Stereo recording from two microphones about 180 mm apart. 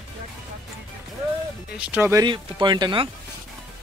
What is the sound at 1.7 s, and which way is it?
Speech, 5° right (ahead or behind).